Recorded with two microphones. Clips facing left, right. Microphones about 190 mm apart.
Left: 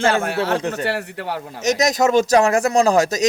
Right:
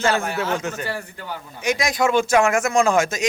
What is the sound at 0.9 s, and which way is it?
Speech, 75° left (ahead or behind).